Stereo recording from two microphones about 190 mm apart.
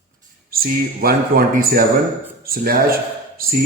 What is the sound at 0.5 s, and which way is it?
A man's voice, 50° right (ahead or behind).